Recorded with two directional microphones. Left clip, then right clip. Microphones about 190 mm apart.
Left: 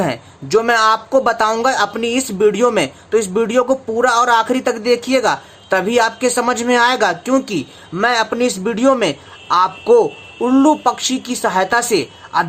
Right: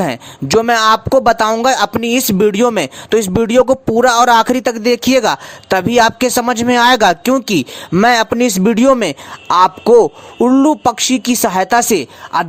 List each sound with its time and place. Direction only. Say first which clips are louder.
0.0 s speech: right 2 dB; 55° right (ahead or behind)